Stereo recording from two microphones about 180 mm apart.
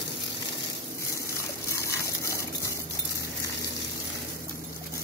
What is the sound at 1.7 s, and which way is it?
Dog, 15° left (ahead or behind).